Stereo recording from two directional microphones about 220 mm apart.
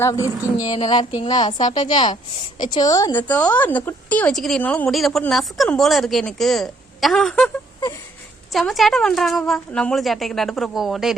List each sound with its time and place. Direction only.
0.0 s a woman's voice: 15° left (ahead or behind)
8.5 s a woman's voice: centre (ahead or behind)